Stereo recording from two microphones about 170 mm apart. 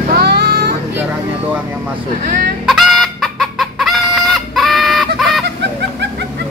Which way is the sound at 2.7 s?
Centre (ahead or behind).